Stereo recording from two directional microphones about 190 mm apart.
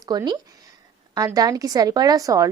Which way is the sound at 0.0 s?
20° right (ahead or behind).